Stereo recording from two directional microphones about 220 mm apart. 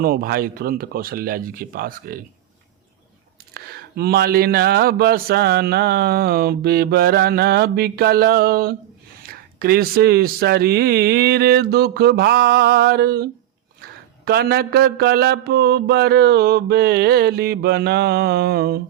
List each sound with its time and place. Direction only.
0.0 s speech: 40° right (ahead or behind)
3.9 s speech: 45° right (ahead or behind)
14.3 s speech: 45° right (ahead or behind)